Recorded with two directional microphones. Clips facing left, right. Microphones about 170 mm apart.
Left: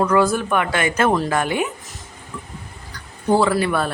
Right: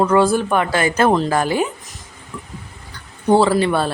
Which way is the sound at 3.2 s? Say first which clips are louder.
Right 3 dB; 25° right (ahead or behind).